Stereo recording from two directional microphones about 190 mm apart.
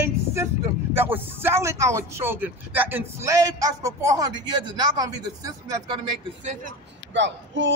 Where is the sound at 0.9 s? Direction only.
10° right (ahead or behind).